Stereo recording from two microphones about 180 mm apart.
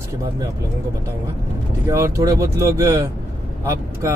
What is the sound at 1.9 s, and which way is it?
Speech, 20° right (ahead or behind).